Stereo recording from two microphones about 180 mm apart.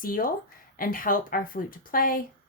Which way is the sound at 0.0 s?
50° left (ahead or behind).